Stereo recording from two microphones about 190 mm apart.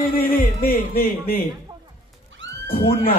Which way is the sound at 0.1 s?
50° left (ahead or behind).